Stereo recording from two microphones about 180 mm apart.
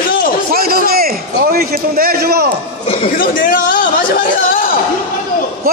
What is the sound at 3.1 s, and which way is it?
Speech, 50° left (ahead or behind).